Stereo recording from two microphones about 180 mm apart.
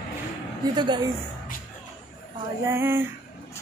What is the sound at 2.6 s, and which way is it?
Speech, 15° right (ahead or behind).